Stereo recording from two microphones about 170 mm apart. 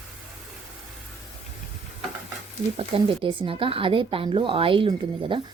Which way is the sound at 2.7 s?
30° right (ahead or behind).